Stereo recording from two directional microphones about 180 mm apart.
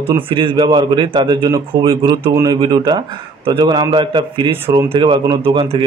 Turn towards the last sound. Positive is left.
turn(degrees=-25)  # may be behind; listen again after turning